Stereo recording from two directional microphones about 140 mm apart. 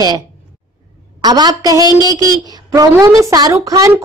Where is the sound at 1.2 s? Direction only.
30° right (ahead or behind).